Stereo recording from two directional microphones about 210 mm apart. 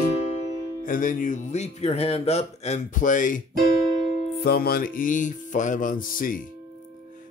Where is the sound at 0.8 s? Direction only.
40° left (ahead or behind).